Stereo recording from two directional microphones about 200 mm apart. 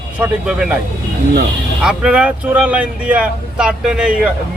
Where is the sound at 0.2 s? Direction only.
5° right (ahead or behind).